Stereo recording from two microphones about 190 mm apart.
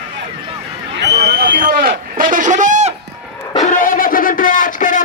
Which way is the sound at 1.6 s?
45° right (ahead or behind).